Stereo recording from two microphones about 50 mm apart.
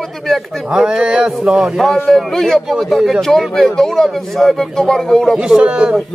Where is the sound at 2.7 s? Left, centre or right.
Centre.